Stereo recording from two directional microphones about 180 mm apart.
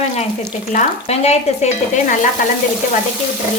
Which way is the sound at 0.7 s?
40° left (ahead or behind).